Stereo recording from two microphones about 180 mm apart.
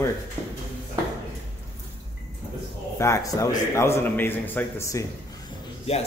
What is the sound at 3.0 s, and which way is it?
A man's voice, 15° left (ahead or behind).